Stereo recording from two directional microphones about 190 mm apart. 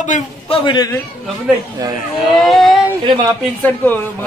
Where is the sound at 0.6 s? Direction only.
20° left (ahead or behind).